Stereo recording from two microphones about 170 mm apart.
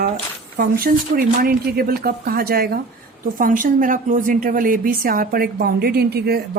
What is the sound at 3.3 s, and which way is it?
A woman's voice, 50° right (ahead or behind).